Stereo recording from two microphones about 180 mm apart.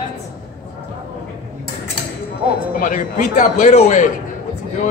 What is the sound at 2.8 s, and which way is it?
A man's voice, 45° left (ahead or behind).